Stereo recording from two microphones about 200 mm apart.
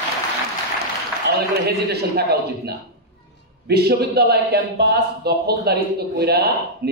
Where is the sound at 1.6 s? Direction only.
55° right (ahead or behind).